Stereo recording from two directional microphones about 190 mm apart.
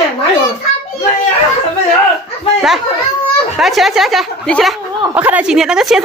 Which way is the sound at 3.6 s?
Centre (ahead or behind).